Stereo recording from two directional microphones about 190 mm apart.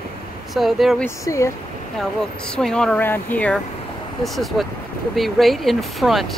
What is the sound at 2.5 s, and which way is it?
Speech, 5° left (ahead or behind).